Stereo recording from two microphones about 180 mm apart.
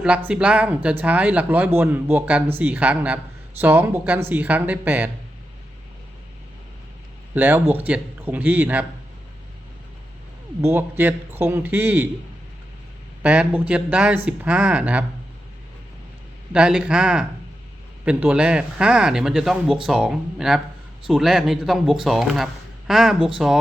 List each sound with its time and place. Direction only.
0.0 s speech: 5° right (ahead or behind)
7.3 s speech: 10° right (ahead or behind)
10.7 s speech: 10° right (ahead or behind)
13.2 s speech: 5° right (ahead or behind)
16.5 s speech: 5° right (ahead or behind)